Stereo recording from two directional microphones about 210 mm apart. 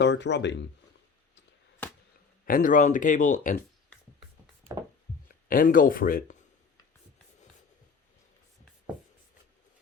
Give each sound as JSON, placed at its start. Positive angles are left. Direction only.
{"t": 0.0, "sound": "speech", "side_deg": 55}
{"t": 2.5, "sound": "speech", "side_deg": 40}
{"t": 5.5, "sound": "speech", "side_deg": 40}